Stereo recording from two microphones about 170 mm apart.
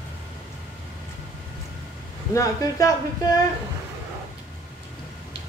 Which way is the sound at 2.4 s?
20° left (ahead or behind).